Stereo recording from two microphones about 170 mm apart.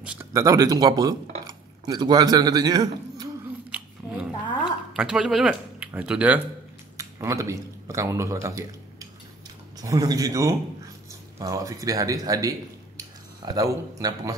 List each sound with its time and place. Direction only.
0.0 s a man's voice: 15° right (ahead or behind)
3.7 s chewing: 10° right (ahead or behind)
4.9 s speech: 5° right (ahead or behind)
9.8 s speech: 20° right (ahead or behind)